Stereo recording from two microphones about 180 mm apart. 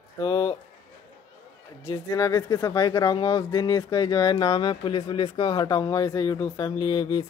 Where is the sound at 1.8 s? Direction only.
15° left (ahead or behind).